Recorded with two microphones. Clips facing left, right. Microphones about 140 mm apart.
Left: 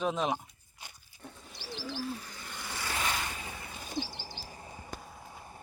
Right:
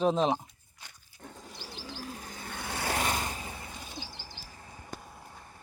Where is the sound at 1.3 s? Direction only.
40° right (ahead or behind); by 3.0 s 55° right (ahead or behind).